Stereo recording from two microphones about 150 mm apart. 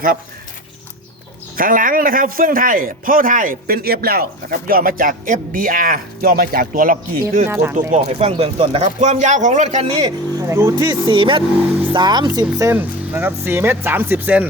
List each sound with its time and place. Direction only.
1.5 s a man's voice: 70° right (ahead or behind)
7.4 s speech: 15° right (ahead or behind)
7.9 s speech: 50° right (ahead or behind)
10.4 s speech: 20° right (ahead or behind)
11.1 s speech: 35° right (ahead or behind); by 14.4 s 10° right (ahead or behind)